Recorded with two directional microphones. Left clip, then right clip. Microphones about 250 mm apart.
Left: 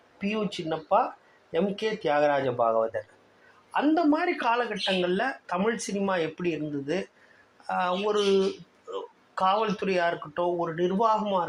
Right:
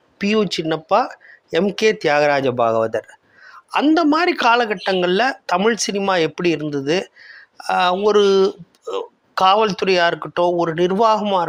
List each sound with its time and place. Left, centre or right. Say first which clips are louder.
0.2 s speech: right 12 dB; right